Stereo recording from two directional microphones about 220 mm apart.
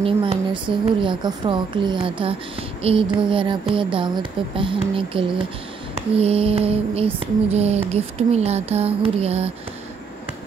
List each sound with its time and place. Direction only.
0.0 s speech: 25° right (ahead or behind)